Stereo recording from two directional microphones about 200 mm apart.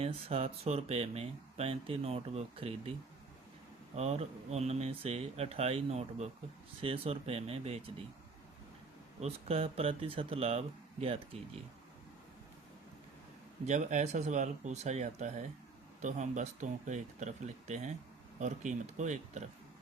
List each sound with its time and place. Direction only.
0.0 s speech: 30° right (ahead or behind)
3.9 s speech: 35° right (ahead or behind)
9.2 s speech: 30° right (ahead or behind)
13.7 s speech: 35° right (ahead or behind)